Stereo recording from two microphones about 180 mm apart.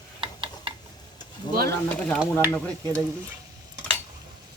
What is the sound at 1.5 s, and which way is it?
Speech, 25° left (ahead or behind).